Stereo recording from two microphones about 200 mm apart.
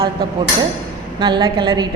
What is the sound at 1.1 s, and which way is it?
Speech, 20° right (ahead or behind).